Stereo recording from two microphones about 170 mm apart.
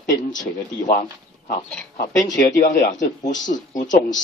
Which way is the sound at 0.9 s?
50° left (ahead or behind).